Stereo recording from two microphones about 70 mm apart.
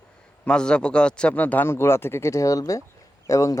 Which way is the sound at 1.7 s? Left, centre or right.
Left.